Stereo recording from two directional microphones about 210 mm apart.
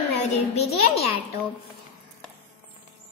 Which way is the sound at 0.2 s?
30° left (ahead or behind).